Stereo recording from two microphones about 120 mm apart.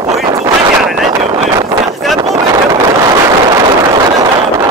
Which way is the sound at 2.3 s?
35° right (ahead or behind).